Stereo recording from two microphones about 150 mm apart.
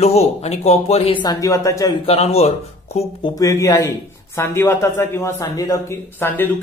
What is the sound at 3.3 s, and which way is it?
A man's voice, 20° left (ahead or behind).